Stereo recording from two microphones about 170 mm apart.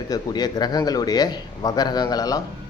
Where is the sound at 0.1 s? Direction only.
25° left (ahead or behind).